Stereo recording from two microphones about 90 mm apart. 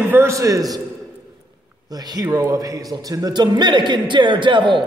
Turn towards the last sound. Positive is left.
turn(degrees=-60)  # may be behind; listen again after turning